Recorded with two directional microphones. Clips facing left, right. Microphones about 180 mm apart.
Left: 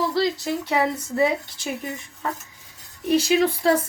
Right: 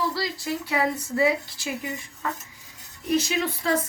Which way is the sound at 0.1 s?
20° left (ahead or behind).